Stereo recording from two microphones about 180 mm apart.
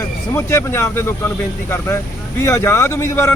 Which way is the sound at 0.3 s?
15° left (ahead or behind).